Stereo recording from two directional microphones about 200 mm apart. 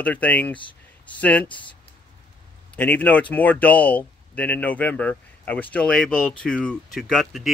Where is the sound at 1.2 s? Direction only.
5° left (ahead or behind).